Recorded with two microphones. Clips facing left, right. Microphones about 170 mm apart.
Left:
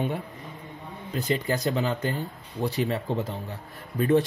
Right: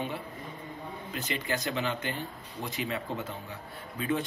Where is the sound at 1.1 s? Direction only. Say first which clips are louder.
Left 7 dB; 35° left (ahead or behind).